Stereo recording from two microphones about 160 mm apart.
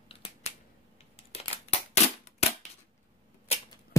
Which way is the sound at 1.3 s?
40° left (ahead or behind).